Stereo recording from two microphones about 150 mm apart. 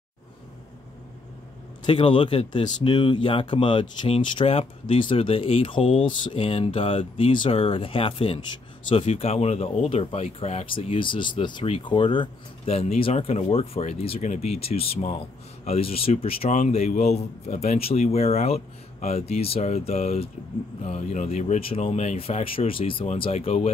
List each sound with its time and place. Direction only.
1.9 s speech: 35° left (ahead or behind); by 21.5 s 50° left (ahead or behind)
21.5 s speech: 40° left (ahead or behind)